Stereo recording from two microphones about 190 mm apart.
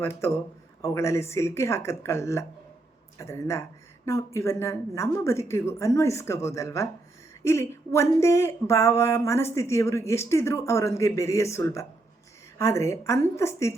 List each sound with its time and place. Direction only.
0.0 s speech: 15° left (ahead or behind)